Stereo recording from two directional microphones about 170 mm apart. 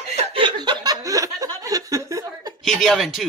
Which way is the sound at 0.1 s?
35° right (ahead or behind).